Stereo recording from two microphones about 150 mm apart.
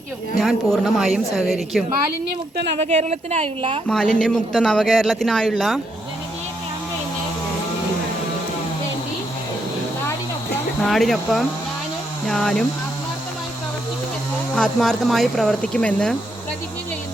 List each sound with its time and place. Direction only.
0.3 s speech: centre (ahead or behind)
2.8 s a woman's voice: 45° right (ahead or behind)
3.8 s speech: 5° left (ahead or behind)
10.8 s speech: centre (ahead or behind)
14.5 s speech: 5° left (ahead or behind)